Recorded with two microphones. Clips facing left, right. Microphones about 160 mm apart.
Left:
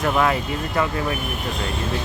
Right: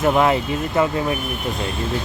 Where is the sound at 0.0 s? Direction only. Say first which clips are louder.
Right 4 dB; 25° right (ahead or behind).